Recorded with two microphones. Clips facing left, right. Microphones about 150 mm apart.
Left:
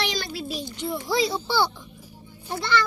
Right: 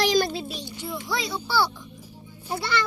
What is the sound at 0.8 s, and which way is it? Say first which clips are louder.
Speech: left 6 dB; 20° left (ahead or behind).